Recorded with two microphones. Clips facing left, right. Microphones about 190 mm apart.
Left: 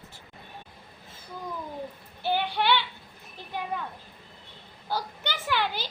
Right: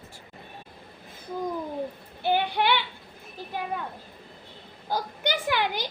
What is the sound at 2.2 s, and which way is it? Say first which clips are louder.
Speech: right 3 dB; 15° right (ahead or behind).